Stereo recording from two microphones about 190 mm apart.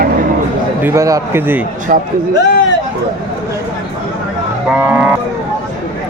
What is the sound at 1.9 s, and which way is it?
Speech, 45° right (ahead or behind).